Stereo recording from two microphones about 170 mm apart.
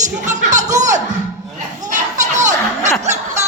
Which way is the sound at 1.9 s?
45° right (ahead or behind).